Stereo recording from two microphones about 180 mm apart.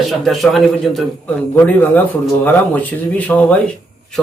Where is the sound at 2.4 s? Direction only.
10° left (ahead or behind).